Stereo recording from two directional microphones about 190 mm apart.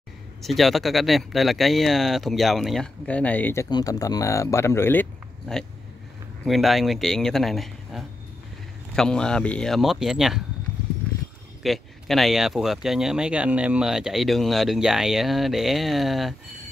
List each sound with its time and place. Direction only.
0.4 s speech: centre (ahead or behind)
6.4 s speech: centre (ahead or behind)
11.6 s speech: centre (ahead or behind)